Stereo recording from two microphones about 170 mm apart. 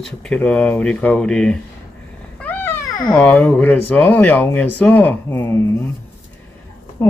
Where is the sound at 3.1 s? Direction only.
5° left (ahead or behind).